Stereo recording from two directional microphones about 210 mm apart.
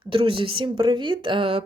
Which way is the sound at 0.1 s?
25° right (ahead or behind).